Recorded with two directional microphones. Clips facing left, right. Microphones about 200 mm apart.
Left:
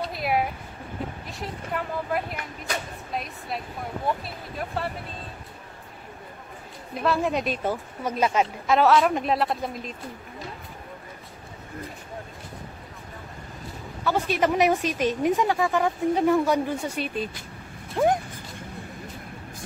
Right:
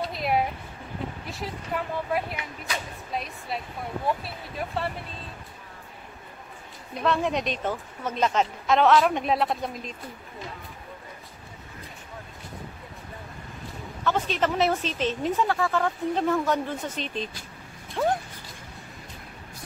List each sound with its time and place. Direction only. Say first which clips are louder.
0.0 s a sound: even; centre (ahead or behind)
1.3 s a woman's voice: right 1 dB; centre (ahead or behind)
6.9 s a woman's voice: left 1 dB; 5° left (ahead or behind)
14.0 s a woman's voice: left 2 dB; 10° left (ahead or behind)